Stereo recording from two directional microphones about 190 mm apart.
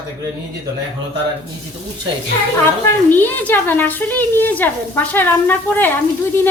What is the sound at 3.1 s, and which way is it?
Speech, 10° left (ahead or behind).